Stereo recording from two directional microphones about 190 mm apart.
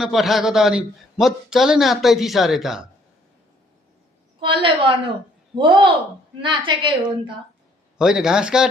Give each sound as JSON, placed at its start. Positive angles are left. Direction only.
{"t": 0.0, "sound": "a man's voice", "side_deg": 0}
{"t": 4.4, "sound": "a woman's voice", "side_deg": -25}
{"t": 7.9, "sound": "a man's voice", "side_deg": -5}